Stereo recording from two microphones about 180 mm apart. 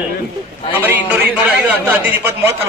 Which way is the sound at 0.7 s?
10° right (ahead or behind).